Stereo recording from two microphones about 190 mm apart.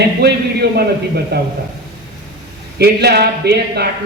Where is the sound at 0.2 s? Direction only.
60° right (ahead or behind).